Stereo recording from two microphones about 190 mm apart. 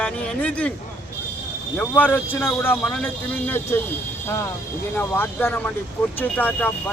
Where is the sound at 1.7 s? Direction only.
10° left (ahead or behind).